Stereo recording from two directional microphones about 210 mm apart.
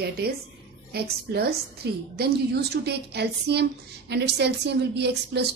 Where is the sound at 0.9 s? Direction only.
50° right (ahead or behind).